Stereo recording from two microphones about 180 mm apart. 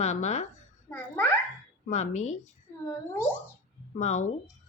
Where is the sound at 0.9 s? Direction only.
10° left (ahead or behind).